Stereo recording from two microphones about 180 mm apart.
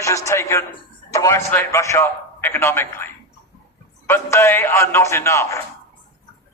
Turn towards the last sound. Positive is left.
turn(degrees=15)  # may be behind; listen again after turning